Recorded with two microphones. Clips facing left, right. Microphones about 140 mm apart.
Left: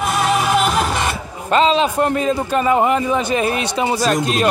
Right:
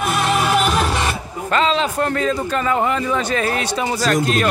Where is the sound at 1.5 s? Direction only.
20° left (ahead or behind).